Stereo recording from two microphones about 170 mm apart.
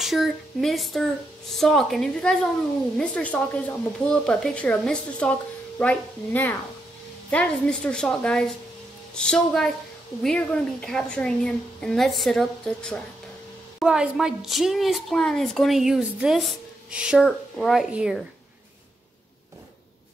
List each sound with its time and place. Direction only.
0.0 s a woman's voice: centre (ahead or behind)